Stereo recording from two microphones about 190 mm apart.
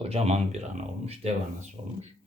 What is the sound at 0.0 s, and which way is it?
Speech, 30° right (ahead or behind).